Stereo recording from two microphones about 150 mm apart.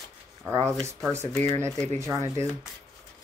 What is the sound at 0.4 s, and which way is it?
Speech, 20° right (ahead or behind).